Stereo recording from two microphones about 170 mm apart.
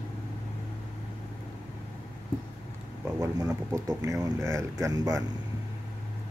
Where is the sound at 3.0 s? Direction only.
20° right (ahead or behind).